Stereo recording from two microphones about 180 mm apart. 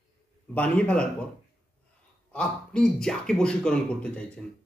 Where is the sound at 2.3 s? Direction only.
5° left (ahead or behind).